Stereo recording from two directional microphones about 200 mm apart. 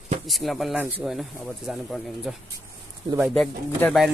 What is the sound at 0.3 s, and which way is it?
A man's voice, centre (ahead or behind).